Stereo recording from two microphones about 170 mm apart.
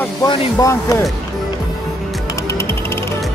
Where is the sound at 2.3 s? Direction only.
15° left (ahead or behind).